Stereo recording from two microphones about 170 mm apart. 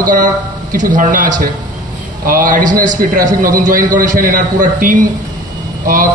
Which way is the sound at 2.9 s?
50° right (ahead or behind).